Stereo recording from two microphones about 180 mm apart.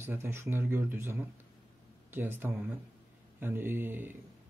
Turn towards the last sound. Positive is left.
turn(degrees=-10)  # may be behind; listen again after turning